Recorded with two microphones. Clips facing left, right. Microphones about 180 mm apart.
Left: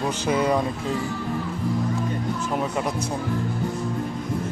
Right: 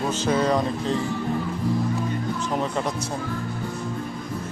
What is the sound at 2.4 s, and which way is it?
Speech, 5° left (ahead or behind).